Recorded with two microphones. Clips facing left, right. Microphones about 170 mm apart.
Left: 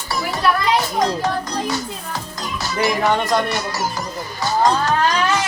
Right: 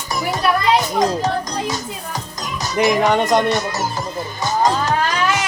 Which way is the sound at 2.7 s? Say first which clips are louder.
Right 3 dB; 20° right (ahead or behind).